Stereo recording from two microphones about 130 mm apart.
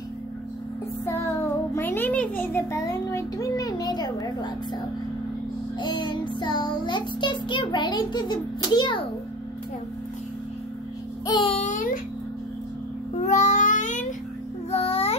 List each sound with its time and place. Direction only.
1.0 s music: 20° left (ahead or behind)
5.8 s child singing: 35° left (ahead or behind)
11.4 s a child's voice: 50° left (ahead or behind)
11.7 s a sound: 90° left
13.2 s a sound: 65° left (ahead or behind)
14.7 s music: 50° left (ahead or behind)